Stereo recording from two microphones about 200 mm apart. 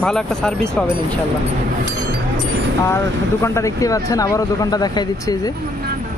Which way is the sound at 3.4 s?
15° left (ahead or behind).